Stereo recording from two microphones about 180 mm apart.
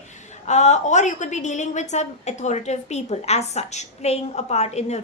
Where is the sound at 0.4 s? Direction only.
40° left (ahead or behind).